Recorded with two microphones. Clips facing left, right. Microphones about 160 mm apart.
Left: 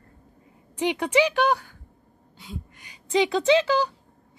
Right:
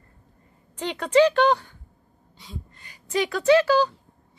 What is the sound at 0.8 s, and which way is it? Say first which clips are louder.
Speech: right 3 dB; 15° left (ahead or behind).